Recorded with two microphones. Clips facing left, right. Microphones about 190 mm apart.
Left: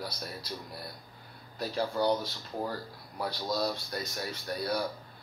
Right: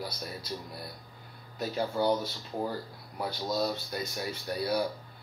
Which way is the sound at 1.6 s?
5° right (ahead or behind).